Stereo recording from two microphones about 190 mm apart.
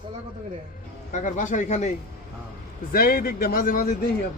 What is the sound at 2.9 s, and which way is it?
Speech, 50° left (ahead or behind).